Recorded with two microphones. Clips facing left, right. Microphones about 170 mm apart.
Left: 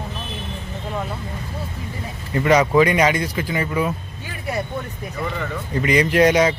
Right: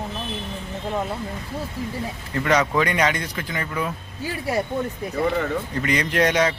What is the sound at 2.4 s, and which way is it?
Speech, 10° left (ahead or behind).